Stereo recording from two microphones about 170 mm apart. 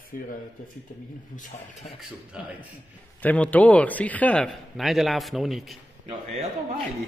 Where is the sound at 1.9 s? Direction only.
5° right (ahead or behind).